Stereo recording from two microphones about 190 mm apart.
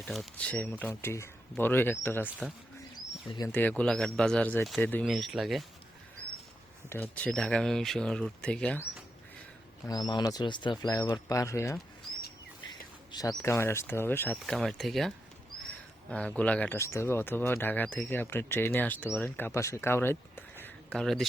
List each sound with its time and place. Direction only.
0.0 s speech: centre (ahead or behind)
3.2 s speech: 20° left (ahead or behind)
3.5 s speech: 10° left (ahead or behind)
6.9 s speech: 10° left (ahead or behind)
9.8 s speech: 20° left (ahead or behind); by 21.2 s centre (ahead or behind)